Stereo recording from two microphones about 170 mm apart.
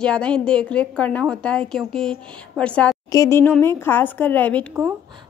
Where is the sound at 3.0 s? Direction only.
20° left (ahead or behind).